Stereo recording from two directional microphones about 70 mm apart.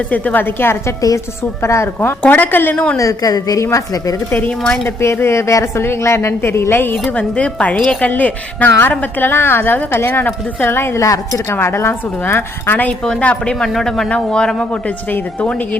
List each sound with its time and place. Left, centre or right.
0.1 s a woman's voice: left
2.0 s a woman's voice: left
2.7 s speech: centre
3.0 s a woman's voice: left
4.3 s a woman's voice: left
4.6 s speech: centre
4.9 s a woman's voice: left
7.1 s a woman's voice: centre
12.9 s a woman's voice: centre